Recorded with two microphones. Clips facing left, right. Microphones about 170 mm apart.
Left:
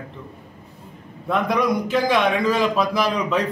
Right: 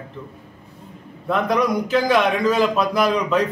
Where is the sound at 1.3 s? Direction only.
Centre (ahead or behind).